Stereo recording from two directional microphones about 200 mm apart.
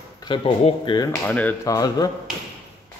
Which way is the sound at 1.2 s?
10° left (ahead or behind).